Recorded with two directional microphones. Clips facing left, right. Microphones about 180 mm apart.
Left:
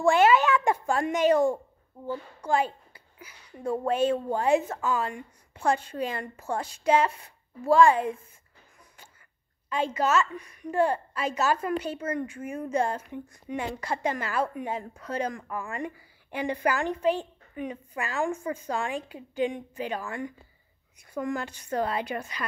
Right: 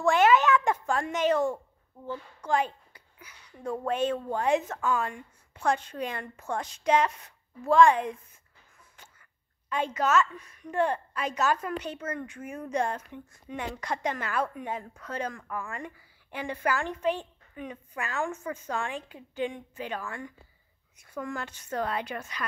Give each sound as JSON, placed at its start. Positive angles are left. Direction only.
{"t": 0.0, "sound": "a child's voice", "side_deg": 10}
{"t": 9.7, "sound": "speech", "side_deg": 10}